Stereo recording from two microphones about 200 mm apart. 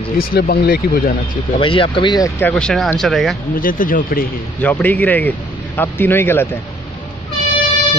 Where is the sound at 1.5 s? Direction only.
25° left (ahead or behind).